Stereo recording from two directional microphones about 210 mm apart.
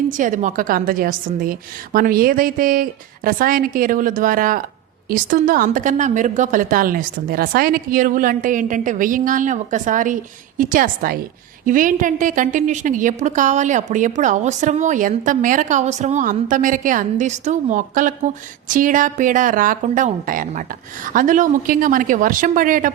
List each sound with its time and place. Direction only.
0.1 s a woman's voice: 40° right (ahead or behind)